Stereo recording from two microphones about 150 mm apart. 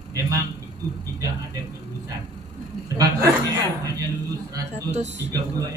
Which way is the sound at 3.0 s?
20° right (ahead or behind).